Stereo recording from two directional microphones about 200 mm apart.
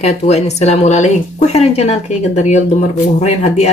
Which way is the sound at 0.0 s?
35° left (ahead or behind).